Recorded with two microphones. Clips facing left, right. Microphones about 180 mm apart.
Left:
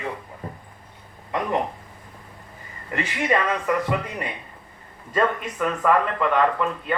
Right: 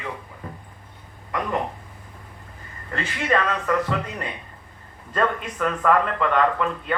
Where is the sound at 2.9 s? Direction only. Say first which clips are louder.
Left 1 dB; 15° left (ahead or behind).